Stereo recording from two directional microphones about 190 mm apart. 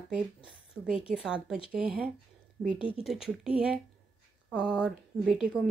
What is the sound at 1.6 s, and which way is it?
A woman's voice, 5° right (ahead or behind).